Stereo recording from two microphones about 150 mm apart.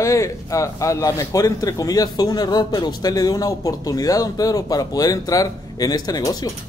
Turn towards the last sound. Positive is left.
turn(degrees=25)  # may be behind; listen again after turning